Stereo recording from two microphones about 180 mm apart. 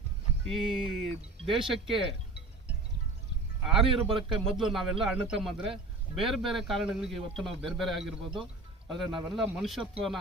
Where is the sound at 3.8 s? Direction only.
30° right (ahead or behind).